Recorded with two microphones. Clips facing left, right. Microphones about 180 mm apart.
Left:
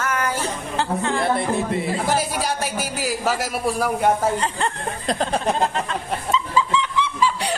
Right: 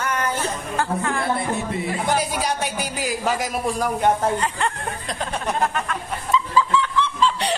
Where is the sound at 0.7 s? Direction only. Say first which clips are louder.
Left 1 dB; 25° left (ahead or behind).